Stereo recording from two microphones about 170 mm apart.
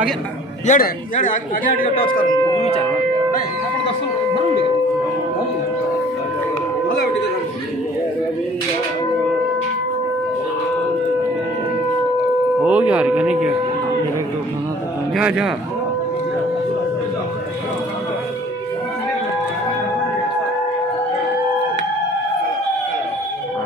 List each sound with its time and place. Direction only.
0.7 s a man's voice: 50° left (ahead or behind)
12.6 s speech: 10° right (ahead or behind)
15.1 s a man's voice: 5° right (ahead or behind)